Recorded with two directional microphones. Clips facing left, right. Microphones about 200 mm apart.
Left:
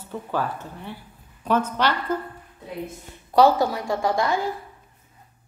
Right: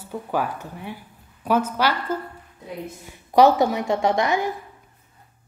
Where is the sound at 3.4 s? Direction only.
20° right (ahead or behind).